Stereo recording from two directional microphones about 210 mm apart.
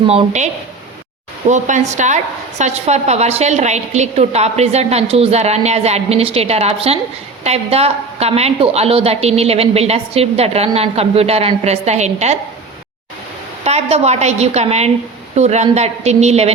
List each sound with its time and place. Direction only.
0.1 s a woman's voice: 30° right (ahead or behind)
13.7 s a woman's voice: 30° right (ahead or behind)